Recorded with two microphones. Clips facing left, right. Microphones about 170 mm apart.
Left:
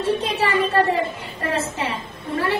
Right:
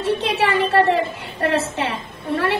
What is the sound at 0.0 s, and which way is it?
A woman's voice, 75° right (ahead or behind).